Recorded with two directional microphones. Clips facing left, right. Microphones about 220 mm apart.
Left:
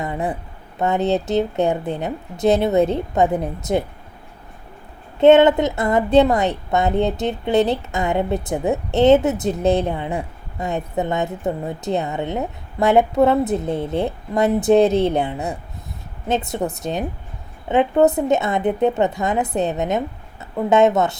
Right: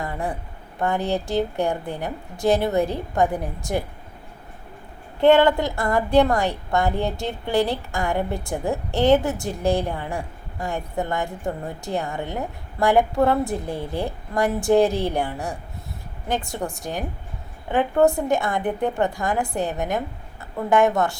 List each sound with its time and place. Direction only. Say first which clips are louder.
0.0 s a woman's voice: left 4 dB; 20° left (ahead or behind)
5.2 s a woman's voice: left 4 dB; 20° left (ahead or behind)